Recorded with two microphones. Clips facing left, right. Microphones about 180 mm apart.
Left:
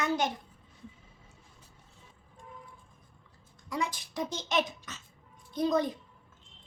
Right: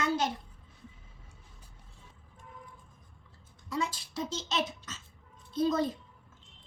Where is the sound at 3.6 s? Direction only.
20° left (ahead or behind).